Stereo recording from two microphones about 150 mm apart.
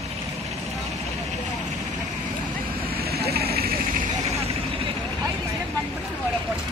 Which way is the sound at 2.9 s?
90° right.